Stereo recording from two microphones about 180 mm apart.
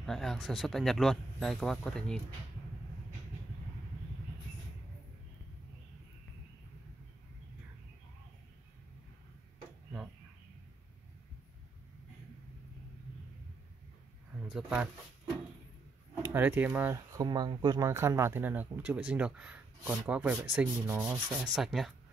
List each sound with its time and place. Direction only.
0.0 s speech: centre (ahead or behind)
14.5 s speech: 5° right (ahead or behind)
16.2 s speech: 10° right (ahead or behind)